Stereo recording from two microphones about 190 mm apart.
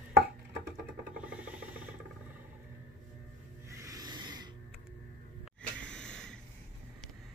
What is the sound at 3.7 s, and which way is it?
Rub, 15° right (ahead or behind).